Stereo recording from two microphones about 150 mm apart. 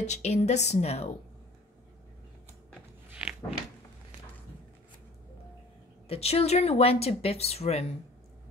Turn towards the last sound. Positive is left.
turn(degrees=45)  # may be behind; listen again after turning